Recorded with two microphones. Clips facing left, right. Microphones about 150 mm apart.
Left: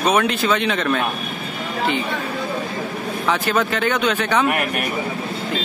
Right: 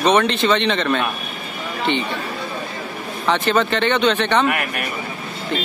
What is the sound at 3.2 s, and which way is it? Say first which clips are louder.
Speech: right 3 dB; 5° left (ahead or behind).